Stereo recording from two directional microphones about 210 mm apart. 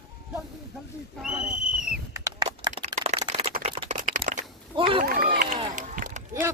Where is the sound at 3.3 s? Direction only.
30° right (ahead or behind).